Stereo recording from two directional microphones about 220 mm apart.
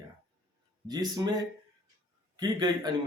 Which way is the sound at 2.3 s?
20° right (ahead or behind).